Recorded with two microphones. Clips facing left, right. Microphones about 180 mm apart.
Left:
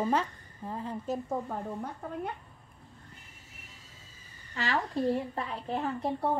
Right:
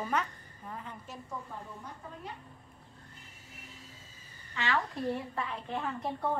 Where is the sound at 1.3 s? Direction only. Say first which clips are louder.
Left 9 dB; 55° left (ahead or behind).